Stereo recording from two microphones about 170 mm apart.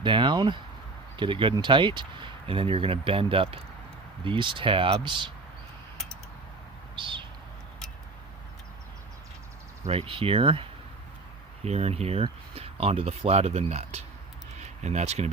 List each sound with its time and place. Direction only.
0.0 s speech: 30° right (ahead or behind)
6.9 s bird: 30° right (ahead or behind)
9.8 s speech: 35° right (ahead or behind)